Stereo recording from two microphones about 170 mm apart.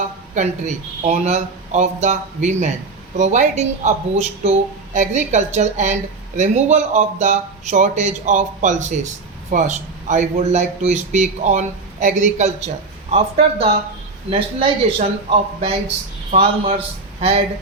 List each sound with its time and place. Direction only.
0.3 s speech: 45° right (ahead or behind)
16.3 s a man's voice: 35° right (ahead or behind)